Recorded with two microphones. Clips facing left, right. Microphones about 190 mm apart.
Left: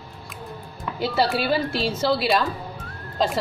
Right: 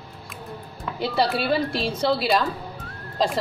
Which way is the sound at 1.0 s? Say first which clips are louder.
Left 1 dB; centre (ahead or behind).